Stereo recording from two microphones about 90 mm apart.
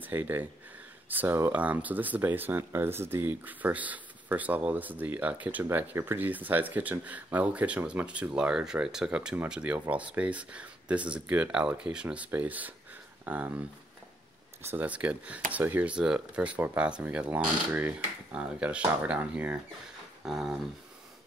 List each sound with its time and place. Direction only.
0.0 s speech: 20° right (ahead or behind)
14.9 s speech: 15° right (ahead or behind)
20.2 s speech: 5° right (ahead or behind)